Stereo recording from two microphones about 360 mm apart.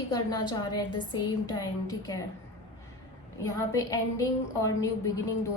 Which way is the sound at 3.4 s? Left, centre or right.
Centre.